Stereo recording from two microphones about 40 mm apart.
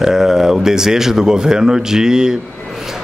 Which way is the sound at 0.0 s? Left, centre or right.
Centre.